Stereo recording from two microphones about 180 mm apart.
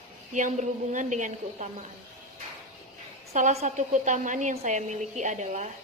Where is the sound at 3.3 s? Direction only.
40° right (ahead or behind).